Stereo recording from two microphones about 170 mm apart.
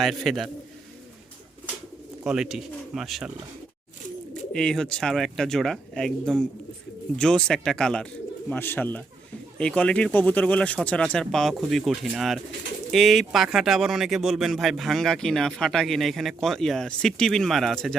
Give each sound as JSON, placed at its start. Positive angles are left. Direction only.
{"t": 0.0, "sound": "speech", "side_deg": 0}
{"t": 2.2, "sound": "speech", "side_deg": -5}
{"t": 4.5, "sound": "speech", "side_deg": 5}